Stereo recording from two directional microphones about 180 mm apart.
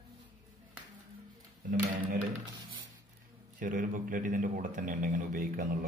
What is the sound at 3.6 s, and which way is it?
A man's voice, 50° right (ahead or behind).